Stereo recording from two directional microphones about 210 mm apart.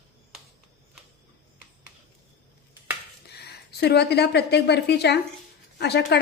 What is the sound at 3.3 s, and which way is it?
A woman's voice, 50° left (ahead or behind).